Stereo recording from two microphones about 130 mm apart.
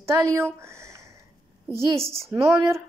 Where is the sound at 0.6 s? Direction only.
20° right (ahead or behind).